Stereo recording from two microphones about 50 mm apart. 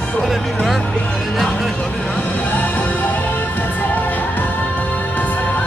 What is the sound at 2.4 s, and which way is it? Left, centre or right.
Music, left.